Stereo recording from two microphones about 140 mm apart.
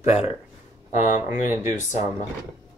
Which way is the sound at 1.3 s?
15° right (ahead or behind).